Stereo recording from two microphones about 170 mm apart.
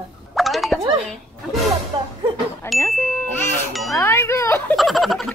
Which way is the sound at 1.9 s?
25° right (ahead or behind).